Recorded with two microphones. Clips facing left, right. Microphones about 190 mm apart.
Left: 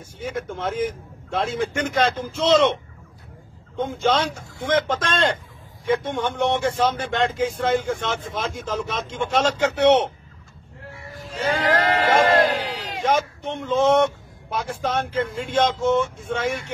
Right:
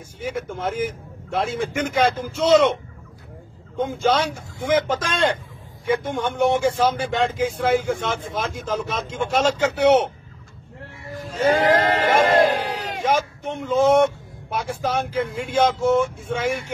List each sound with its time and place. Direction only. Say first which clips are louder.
0.2 s a man's voice: right 1 dB; 10° right (ahead or behind)
3.8 s a man's voice: right 1 dB; 10° right (ahead or behind)
11.1 s speech: right 6 dB; 50° right (ahead or behind)
12.6 s a sound: right 2 dB; 50° right (ahead or behind)
13.0 s a man's voice: left 1 dB; 10° right (ahead or behind)